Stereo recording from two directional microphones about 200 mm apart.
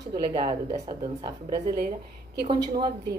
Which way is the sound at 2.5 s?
25° right (ahead or behind).